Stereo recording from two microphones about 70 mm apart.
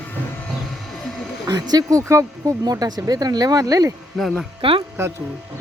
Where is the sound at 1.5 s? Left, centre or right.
Right.